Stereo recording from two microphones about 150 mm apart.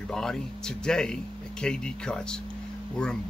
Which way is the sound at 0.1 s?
5° left (ahead or behind).